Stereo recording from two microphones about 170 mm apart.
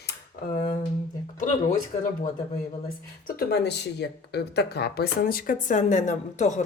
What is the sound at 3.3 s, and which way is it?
Speech, 70° left (ahead or behind).